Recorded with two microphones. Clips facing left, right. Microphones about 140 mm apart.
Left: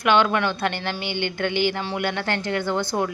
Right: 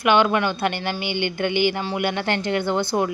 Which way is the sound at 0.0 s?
10° right (ahead or behind).